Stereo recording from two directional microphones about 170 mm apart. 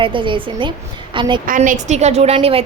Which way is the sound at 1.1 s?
30° right (ahead or behind).